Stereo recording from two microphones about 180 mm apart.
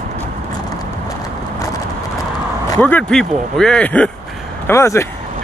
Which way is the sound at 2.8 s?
10° left (ahead or behind).